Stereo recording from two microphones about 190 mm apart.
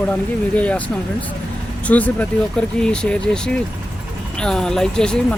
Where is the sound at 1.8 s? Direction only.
10° left (ahead or behind).